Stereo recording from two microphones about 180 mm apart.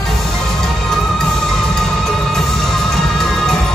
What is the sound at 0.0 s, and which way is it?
Music, centre (ahead or behind).